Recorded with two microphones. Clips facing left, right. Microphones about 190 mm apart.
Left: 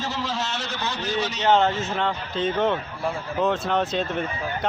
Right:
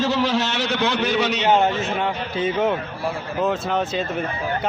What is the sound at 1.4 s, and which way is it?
A man's voice, 10° right (ahead or behind).